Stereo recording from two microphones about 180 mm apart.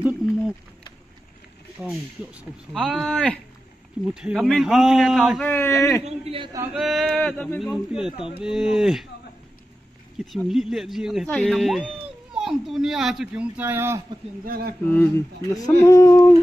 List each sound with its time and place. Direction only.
1.8 s speech: 5° right (ahead or behind)
5.4 s speech: 10° left (ahead or behind)
6.0 s a man's voice: 30° right (ahead or behind)
6.7 s speech: centre (ahead or behind)
10.3 s speech: centre (ahead or behind)
14.4 s speech: 55° right (ahead or behind)
14.9 s speech: 10° left (ahead or behind)